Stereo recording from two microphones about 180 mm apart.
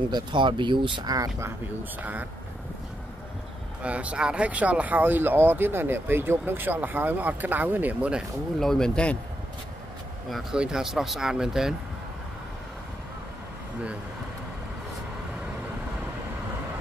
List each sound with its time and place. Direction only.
0.1 s speech: 25° right (ahead or behind)
2.0 s speech: 10° right (ahead or behind)
3.8 s speech: 5° right (ahead or behind)
10.3 s speech: 5° right (ahead or behind)